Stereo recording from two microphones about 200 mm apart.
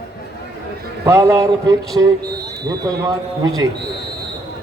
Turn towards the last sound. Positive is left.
turn(degrees=-20)  # may be behind; listen again after turning